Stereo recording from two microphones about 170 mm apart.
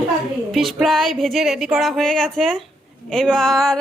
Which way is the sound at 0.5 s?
Centre (ahead or behind).